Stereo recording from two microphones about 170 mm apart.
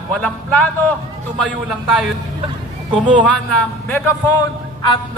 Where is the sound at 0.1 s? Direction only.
10° left (ahead or behind).